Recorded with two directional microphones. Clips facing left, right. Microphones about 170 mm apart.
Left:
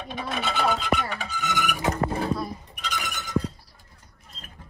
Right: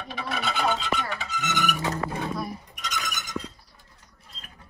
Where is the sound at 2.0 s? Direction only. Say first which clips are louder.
Left 4 dB; 30° left (ahead or behind).